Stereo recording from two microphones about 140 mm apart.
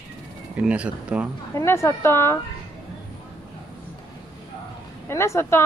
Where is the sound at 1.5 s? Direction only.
20° left (ahead or behind).